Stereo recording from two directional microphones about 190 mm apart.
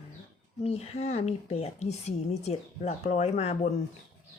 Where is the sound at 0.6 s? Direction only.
30° left (ahead or behind).